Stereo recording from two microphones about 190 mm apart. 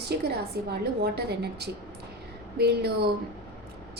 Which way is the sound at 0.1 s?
60° right (ahead or behind).